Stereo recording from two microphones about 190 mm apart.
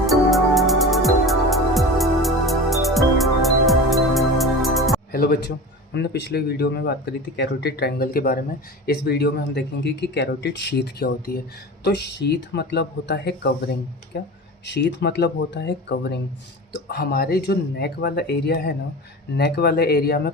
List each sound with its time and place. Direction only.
0.0 s music: centre (ahead or behind)
5.1 s a man's voice: 55° left (ahead or behind)